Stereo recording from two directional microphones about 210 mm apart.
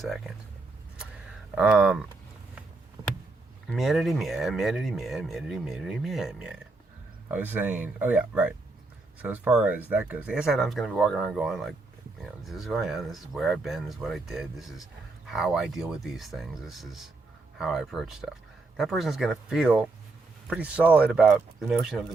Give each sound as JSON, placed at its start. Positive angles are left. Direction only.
{"t": 1.5, "sound": "speech", "side_deg": -5}
{"t": 3.7, "sound": "speech", "side_deg": 0}